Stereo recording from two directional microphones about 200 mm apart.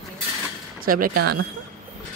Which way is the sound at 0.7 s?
45° right (ahead or behind).